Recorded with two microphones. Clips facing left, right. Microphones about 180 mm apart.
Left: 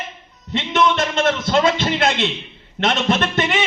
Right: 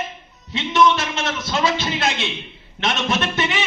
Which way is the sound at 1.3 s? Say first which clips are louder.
Left 4 dB; 60° left (ahead or behind).